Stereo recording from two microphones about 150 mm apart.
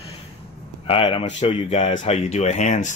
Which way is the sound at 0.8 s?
35° left (ahead or behind).